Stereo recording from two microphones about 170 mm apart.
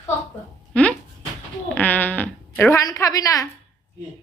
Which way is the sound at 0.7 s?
5° left (ahead or behind).